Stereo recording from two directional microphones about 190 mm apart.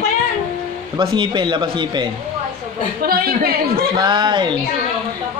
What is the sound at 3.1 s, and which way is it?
Speech, 50° right (ahead or behind).